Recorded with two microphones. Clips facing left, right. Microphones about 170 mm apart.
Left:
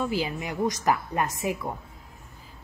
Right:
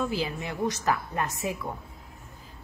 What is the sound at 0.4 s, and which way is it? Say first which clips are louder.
Speech: left 2 dB; 15° left (ahead or behind).